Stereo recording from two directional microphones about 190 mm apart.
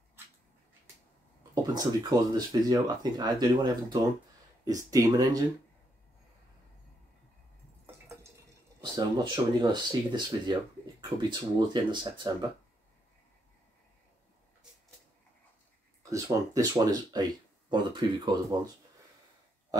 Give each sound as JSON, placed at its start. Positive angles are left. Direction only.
{"t": 1.5, "sound": "speech", "side_deg": -20}
{"t": 8.8, "sound": "speech", "side_deg": -25}
{"t": 16.0, "sound": "speech", "side_deg": -15}